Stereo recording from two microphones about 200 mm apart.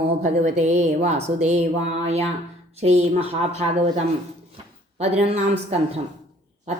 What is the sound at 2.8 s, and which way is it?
Speech, 30° right (ahead or behind).